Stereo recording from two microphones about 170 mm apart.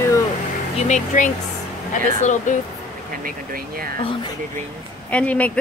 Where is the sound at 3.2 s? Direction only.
60° right (ahead or behind).